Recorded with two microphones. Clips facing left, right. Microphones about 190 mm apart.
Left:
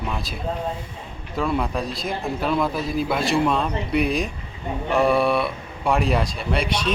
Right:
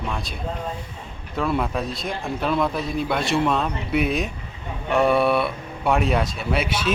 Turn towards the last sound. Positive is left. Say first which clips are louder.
# even
turn(degrees=-5)  # may be behind; listen again after turning